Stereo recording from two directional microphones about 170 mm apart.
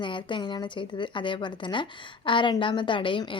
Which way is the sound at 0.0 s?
30° left (ahead or behind).